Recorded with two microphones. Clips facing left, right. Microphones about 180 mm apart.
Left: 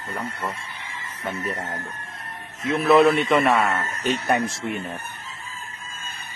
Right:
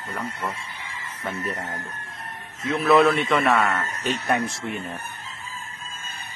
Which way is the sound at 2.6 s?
Centre (ahead or behind).